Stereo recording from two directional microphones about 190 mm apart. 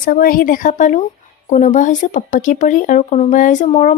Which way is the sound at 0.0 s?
50° left (ahead or behind).